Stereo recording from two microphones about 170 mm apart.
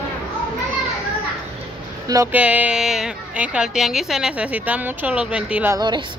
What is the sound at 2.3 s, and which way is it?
A woman's voice, 10° right (ahead or behind).